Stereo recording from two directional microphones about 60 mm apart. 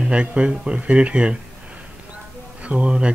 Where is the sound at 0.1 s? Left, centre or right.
Centre.